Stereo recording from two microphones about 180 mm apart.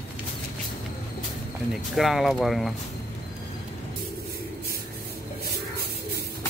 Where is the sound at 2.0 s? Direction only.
Centre (ahead or behind).